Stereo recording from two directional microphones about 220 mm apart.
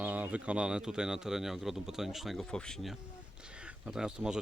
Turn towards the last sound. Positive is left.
turn(degrees=-5)  # may be behind; listen again after turning